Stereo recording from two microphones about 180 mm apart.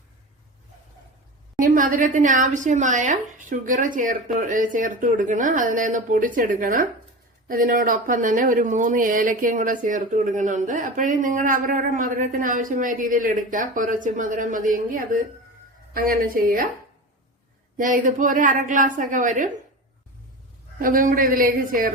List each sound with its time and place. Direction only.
1.5 s speech: 50° right (ahead or behind)
17.7 s speech: 50° right (ahead or behind)
20.7 s speech: 50° right (ahead or behind)